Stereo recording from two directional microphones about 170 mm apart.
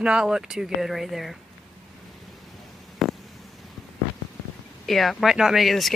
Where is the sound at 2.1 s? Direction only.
Centre (ahead or behind).